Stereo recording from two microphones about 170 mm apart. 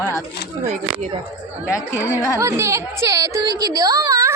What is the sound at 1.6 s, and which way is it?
Speech, 10° right (ahead or behind).